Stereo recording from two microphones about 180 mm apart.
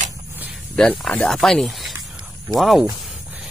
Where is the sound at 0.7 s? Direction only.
5° left (ahead or behind).